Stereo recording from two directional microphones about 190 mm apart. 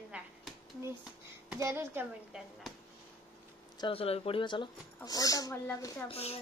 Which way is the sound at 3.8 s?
30° left (ahead or behind).